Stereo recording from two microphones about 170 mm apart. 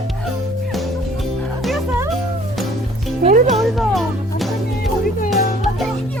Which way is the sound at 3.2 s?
40° right (ahead or behind).